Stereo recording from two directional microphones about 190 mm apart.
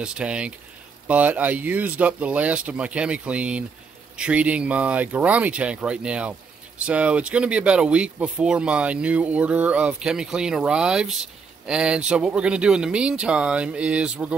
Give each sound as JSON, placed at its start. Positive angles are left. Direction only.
{"t": 0.0, "sound": "speech", "side_deg": -5}